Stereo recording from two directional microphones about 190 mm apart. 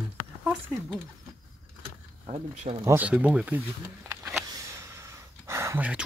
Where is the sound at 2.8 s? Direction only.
10° right (ahead or behind).